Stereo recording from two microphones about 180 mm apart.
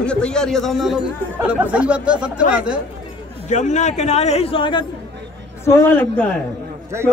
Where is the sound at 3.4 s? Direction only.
40° left (ahead or behind).